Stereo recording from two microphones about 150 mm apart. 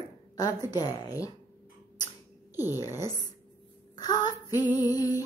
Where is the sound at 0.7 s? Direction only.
25° left (ahead or behind).